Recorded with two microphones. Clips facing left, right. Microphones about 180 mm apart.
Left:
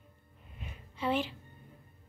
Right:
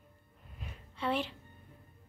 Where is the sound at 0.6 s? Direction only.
5° left (ahead or behind).